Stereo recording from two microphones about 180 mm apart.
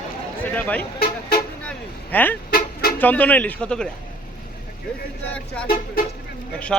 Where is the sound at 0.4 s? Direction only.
10° left (ahead or behind).